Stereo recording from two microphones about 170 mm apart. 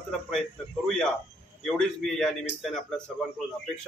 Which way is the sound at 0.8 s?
5° left (ahead or behind).